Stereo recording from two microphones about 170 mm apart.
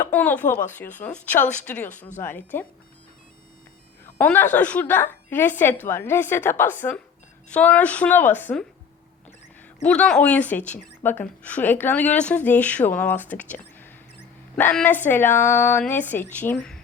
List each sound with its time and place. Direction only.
0.1 s speech: 10° left (ahead or behind)
1.9 s speech: 45° left (ahead or behind)
2.2 s speech: 10° left (ahead or behind)
4.0 s speech: 10° left (ahead or behind)
9.8 s speech: 5° left (ahead or behind)